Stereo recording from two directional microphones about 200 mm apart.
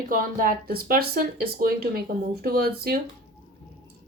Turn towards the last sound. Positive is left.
turn(degrees=-50)  # may be behind; listen again after turning